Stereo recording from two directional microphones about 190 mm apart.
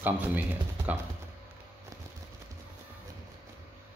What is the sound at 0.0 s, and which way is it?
Speech, 10° right (ahead or behind).